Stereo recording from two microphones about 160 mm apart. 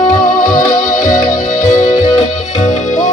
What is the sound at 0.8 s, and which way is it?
Music, 55° left (ahead or behind).